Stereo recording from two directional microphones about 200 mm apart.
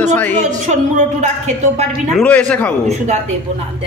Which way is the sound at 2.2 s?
5° left (ahead or behind).